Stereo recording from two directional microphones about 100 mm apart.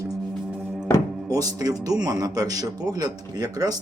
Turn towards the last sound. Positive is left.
turn(degrees=-40)  # may be behind; listen again after turning